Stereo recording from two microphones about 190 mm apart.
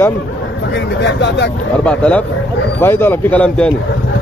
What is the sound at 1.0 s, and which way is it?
Speech, 65° left (ahead or behind).